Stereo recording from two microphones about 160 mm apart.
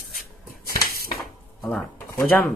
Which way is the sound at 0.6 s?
70° left (ahead or behind).